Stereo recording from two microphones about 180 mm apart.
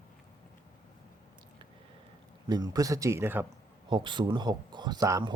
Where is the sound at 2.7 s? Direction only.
20° right (ahead or behind).